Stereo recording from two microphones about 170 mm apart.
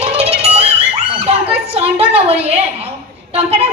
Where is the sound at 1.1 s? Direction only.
35° right (ahead or behind).